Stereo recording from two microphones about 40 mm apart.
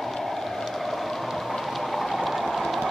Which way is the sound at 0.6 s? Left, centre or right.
Centre.